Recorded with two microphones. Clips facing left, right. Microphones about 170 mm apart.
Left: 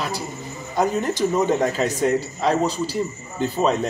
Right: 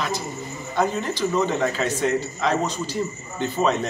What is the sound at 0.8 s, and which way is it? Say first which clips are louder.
Speech: left 3 dB; 45° left (ahead or behind).